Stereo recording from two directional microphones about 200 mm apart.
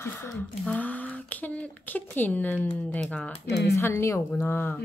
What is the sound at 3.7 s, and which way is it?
A woman's voice, 15° left (ahead or behind).